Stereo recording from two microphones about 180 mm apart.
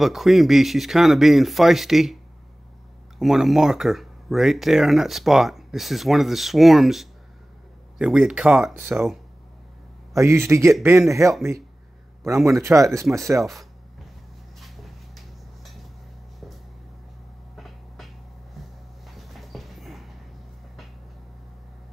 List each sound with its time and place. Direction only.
0.0 s speech: centre (ahead or behind)
3.2 s speech: centre (ahead or behind)
10.1 s speech: 15° right (ahead or behind)
12.4 s speech: 15° right (ahead or behind)
13.4 s a sound: centre (ahead or behind)
17.6 s music: centre (ahead or behind)
19.0 s a sound: centre (ahead or behind)